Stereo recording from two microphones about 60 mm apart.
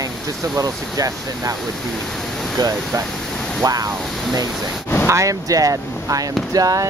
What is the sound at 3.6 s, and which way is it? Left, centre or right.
Speech, right.